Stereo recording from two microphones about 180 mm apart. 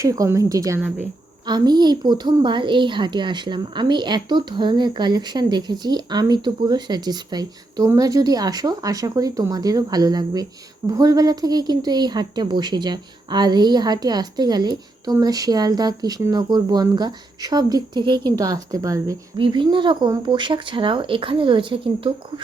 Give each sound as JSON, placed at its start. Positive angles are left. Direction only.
{"t": 0.0, "sound": "a woman's voice", "side_deg": -15}